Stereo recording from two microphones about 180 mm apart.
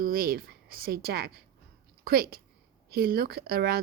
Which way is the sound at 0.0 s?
55° right (ahead or behind).